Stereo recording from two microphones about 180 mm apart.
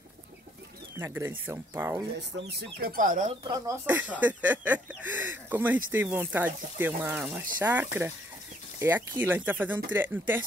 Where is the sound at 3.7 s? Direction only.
10° right (ahead or behind).